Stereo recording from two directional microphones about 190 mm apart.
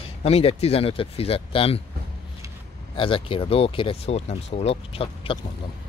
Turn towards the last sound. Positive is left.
turn(degrees=30)  # may be behind; listen again after turning